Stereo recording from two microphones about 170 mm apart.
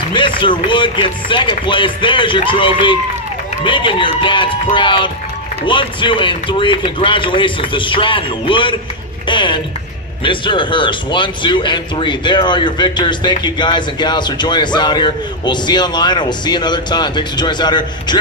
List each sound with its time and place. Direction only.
0.1 s speech: 30° left (ahead or behind)